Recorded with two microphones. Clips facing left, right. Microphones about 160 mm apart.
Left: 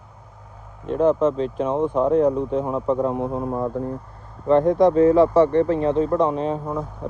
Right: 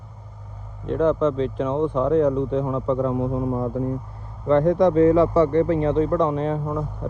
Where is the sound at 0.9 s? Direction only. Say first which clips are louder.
Left 1 dB; 45° left (ahead or behind).